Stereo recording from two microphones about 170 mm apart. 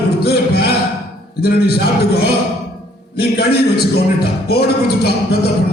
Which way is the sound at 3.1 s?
70° left (ahead or behind).